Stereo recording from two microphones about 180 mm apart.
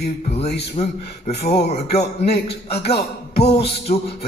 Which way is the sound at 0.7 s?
35° left (ahead or behind).